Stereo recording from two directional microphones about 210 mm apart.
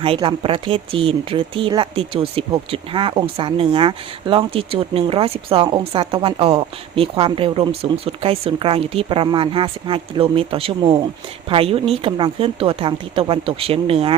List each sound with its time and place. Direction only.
0.0 s speech: 25° right (ahead or behind)